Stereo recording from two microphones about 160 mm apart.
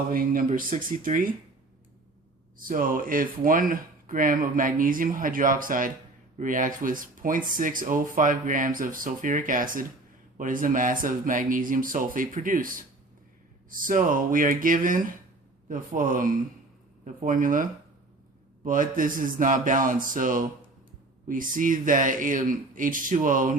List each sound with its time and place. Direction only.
0.1 s speech: 60° right (ahead or behind)
2.6 s speech: 60° right (ahead or behind)